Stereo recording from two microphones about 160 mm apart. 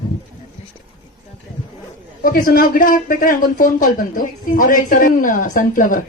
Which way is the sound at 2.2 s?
65° left (ahead or behind).